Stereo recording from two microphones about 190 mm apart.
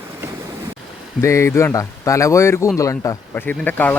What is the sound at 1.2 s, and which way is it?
Speech, 15° left (ahead or behind).